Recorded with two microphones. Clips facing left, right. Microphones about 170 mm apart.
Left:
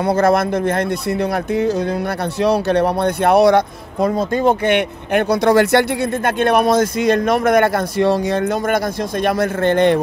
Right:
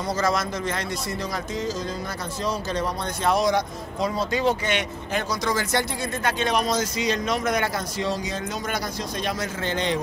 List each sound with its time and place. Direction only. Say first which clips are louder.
0.0 s speech: left 10 dB; 60° left (ahead or behind)